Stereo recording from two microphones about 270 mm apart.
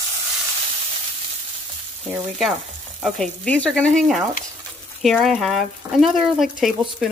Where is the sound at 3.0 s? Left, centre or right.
Centre.